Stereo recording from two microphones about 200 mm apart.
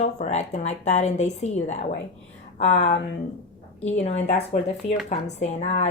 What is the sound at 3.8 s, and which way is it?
A woman's voice, 35° left (ahead or behind).